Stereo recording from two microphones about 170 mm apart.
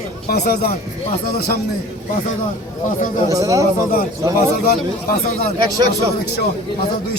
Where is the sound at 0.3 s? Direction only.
65° left (ahead or behind).